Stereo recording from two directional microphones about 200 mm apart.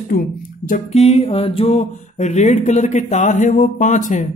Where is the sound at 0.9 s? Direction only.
30° left (ahead or behind).